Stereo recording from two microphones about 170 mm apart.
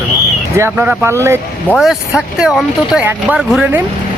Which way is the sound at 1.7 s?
5° right (ahead or behind).